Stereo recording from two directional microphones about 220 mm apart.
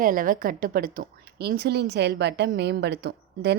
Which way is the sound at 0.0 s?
40° right (ahead or behind).